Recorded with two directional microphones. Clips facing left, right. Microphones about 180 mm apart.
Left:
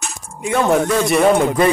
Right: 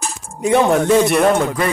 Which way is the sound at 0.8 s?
20° right (ahead or behind).